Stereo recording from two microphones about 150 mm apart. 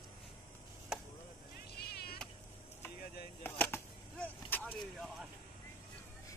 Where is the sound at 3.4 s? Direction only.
10° left (ahead or behind).